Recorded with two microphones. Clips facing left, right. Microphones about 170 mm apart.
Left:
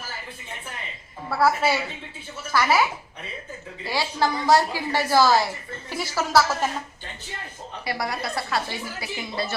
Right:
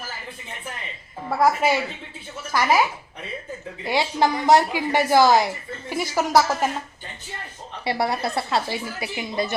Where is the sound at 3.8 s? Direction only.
20° right (ahead or behind).